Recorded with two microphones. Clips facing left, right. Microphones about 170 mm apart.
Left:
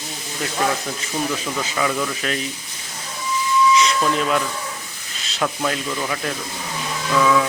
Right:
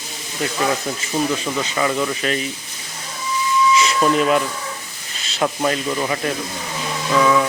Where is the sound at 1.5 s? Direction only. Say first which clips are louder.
Right 1 dB; 10° right (ahead or behind).